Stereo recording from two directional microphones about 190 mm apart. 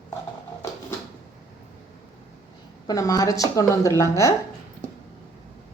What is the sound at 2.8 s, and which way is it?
A woman's voice, 20° left (ahead or behind).